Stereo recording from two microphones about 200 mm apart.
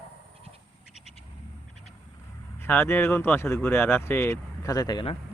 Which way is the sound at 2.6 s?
10° left (ahead or behind).